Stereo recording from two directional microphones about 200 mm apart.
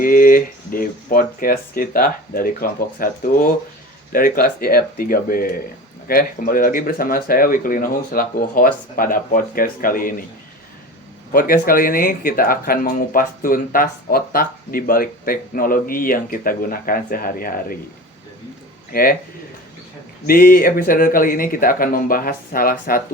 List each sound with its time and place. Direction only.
0.0 s speech: 45° left (ahead or behind)
11.3 s speech: 45° left (ahead or behind)
18.9 s speech: 45° left (ahead or behind)
20.2 s speech: 45° left (ahead or behind)